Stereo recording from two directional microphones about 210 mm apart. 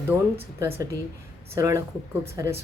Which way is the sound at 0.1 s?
15° right (ahead or behind).